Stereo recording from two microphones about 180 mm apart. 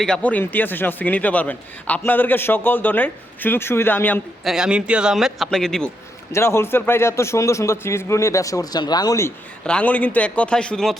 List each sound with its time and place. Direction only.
0.0 s a man's voice: 5° left (ahead or behind)
4.4 s a man's voice: 5° right (ahead or behind)
6.3 s a man's voice: 15° left (ahead or behind)
9.6 s a man's voice: 5° left (ahead or behind)